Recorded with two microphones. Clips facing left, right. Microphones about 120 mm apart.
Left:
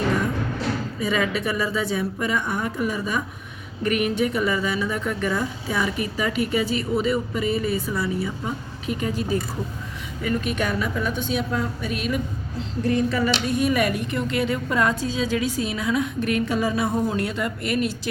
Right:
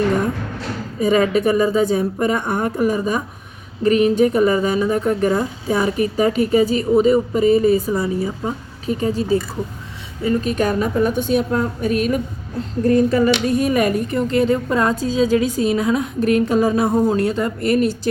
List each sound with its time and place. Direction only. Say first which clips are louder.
0.9 s a woman's voice: right 11 dB; 40° right (ahead or behind)